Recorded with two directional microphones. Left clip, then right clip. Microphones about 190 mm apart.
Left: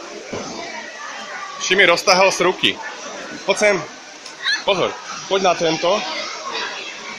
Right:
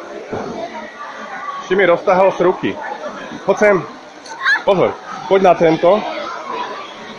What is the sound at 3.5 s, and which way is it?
A man's voice, 15° right (ahead or behind).